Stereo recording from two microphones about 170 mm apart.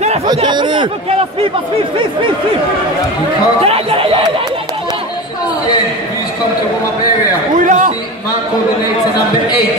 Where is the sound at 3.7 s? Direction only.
35° right (ahead or behind).